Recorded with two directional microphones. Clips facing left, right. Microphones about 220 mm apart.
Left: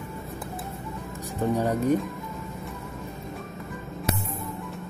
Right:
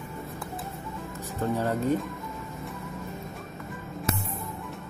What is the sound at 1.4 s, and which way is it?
Speech, 15° left (ahead or behind).